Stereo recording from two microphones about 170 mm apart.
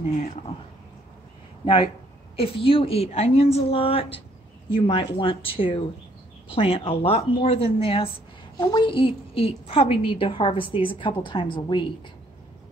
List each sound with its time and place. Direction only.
2.3 s a woman's voice: 35° left (ahead or behind)